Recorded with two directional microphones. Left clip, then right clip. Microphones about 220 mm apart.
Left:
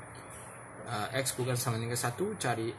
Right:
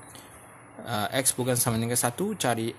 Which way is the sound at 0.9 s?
55° right (ahead or behind).